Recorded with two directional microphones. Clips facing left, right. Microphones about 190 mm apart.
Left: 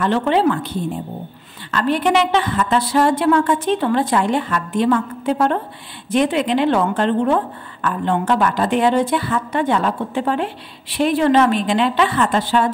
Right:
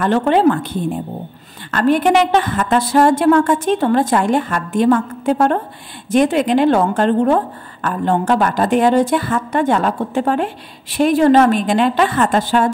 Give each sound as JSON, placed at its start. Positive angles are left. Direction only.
{"t": 0.0, "sound": "a woman's voice", "side_deg": -50}